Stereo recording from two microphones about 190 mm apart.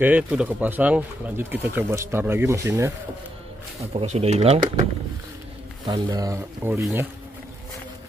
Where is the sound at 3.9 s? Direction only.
35° right (ahead or behind).